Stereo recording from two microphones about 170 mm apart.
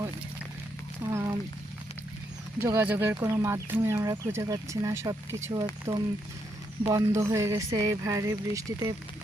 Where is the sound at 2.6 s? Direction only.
10° right (ahead or behind).